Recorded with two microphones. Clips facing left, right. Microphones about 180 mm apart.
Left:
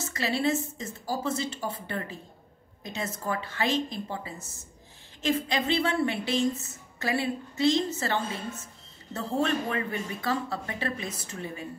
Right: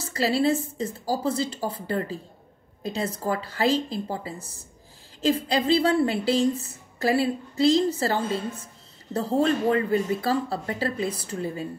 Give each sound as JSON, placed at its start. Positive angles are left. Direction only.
{"t": 0.0, "sound": "a woman's voice", "side_deg": -35}